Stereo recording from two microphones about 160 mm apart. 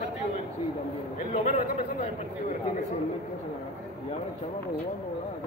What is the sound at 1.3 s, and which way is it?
Speech, 50° left (ahead or behind).